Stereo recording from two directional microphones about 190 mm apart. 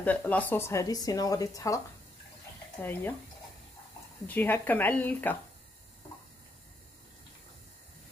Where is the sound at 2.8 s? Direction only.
10° left (ahead or behind).